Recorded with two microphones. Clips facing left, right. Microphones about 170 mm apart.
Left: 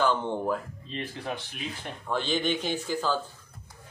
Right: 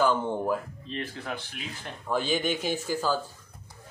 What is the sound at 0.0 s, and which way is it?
Speech, 5° right (ahead or behind).